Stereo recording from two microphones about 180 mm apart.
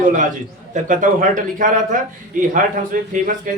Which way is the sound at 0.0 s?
45° right (ahead or behind).